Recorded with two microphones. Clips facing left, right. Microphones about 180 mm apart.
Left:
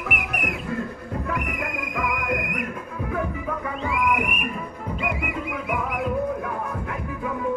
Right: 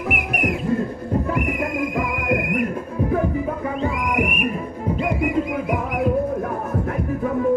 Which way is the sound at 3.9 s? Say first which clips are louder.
Right 2 dB; 40° right (ahead or behind).